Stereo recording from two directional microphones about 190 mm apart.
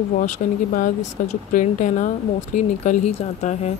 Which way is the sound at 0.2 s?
45° left (ahead or behind).